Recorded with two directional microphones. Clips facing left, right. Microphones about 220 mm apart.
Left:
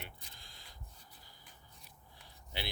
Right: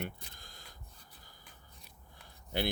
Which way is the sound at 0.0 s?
45° right (ahead or behind).